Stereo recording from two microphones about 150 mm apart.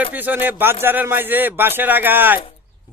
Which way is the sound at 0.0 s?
10° right (ahead or behind).